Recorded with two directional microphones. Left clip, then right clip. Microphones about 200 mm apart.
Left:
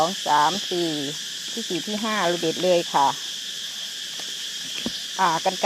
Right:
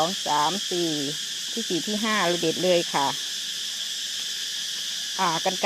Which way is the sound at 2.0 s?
15° right (ahead or behind).